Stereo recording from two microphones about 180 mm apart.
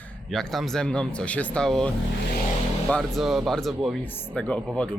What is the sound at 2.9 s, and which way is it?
Speech, centre (ahead or behind).